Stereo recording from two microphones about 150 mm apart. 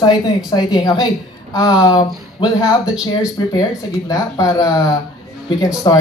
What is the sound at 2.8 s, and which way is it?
Speech, 5° right (ahead or behind).